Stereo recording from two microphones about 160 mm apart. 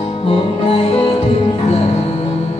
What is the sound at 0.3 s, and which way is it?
Music, 35° left (ahead or behind).